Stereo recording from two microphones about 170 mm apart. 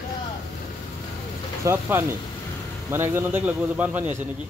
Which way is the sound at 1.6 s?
15° right (ahead or behind).